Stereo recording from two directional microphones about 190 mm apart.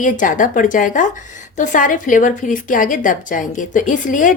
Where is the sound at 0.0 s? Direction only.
45° left (ahead or behind).